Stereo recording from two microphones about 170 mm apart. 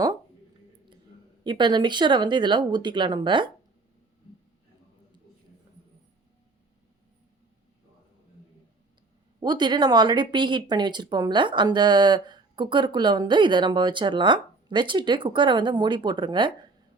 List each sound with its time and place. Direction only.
1.5 s speech: 25° right (ahead or behind)
9.4 s speech: 25° right (ahead or behind)